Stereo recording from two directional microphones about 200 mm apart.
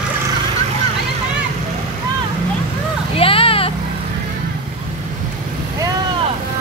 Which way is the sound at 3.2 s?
25° left (ahead or behind).